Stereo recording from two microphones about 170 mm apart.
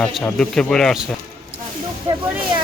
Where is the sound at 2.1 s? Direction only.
40° right (ahead or behind).